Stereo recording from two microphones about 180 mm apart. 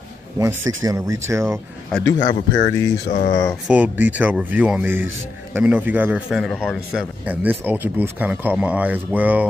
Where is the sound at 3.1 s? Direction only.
45° left (ahead or behind).